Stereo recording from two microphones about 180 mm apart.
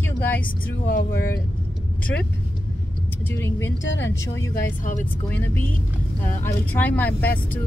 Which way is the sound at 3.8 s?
90° left.